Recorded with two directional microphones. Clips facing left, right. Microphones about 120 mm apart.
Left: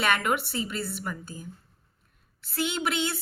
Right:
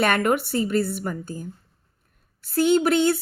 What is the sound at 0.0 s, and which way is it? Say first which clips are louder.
Speech: right 5 dB; 45° right (ahead or behind).